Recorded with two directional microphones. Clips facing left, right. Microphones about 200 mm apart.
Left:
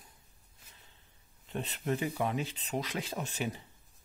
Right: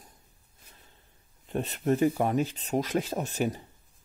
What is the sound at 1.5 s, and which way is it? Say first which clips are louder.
A man's voice: right 7 dB; 45° right (ahead or behind).